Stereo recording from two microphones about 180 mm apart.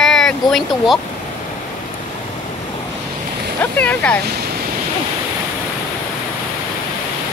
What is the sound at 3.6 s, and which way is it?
Speech, 10° left (ahead or behind).